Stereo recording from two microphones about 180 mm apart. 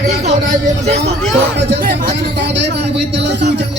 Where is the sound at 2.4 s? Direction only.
75° right (ahead or behind).